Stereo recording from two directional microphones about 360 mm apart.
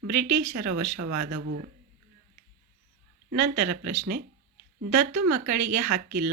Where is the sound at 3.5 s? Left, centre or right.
Right.